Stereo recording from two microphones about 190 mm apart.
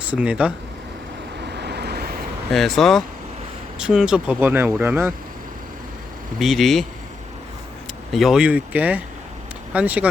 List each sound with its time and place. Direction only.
0.0 s speech: 5° right (ahead or behind)
1.5 s vehicle: 60° right (ahead or behind)
2.5 s speech: centre (ahead or behind)
6.4 s speech: centre (ahead or behind)
8.1 s speech: centre (ahead or behind)